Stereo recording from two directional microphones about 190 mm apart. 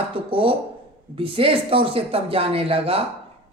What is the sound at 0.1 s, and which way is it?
A woman's voice, 30° right (ahead or behind).